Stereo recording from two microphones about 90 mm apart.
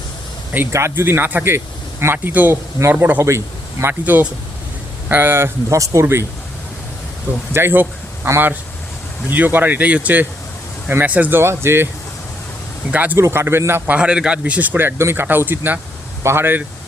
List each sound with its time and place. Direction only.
0.7 s speech: 30° right (ahead or behind)
7.5 s speech: 25° right (ahead or behind)
12.9 s speech: 15° right (ahead or behind)
13.1 s speech: 30° right (ahead or behind)
13.9 s speech: 10° right (ahead or behind)